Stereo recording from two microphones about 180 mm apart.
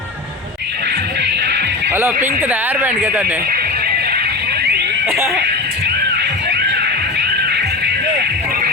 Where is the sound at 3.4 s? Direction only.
55° right (ahead or behind).